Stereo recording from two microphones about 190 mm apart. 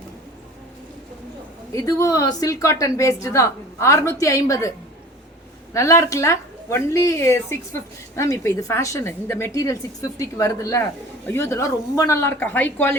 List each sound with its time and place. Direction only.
1.7 s a woman's voice: 15° left (ahead or behind)
5.7 s a woman's voice: 15° left (ahead or behind)